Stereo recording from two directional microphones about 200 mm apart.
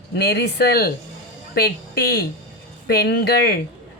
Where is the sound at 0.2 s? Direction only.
55° left (ahead or behind).